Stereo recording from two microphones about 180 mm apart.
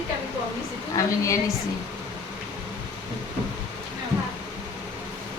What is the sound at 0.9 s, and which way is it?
Speech, 15° left (ahead or behind).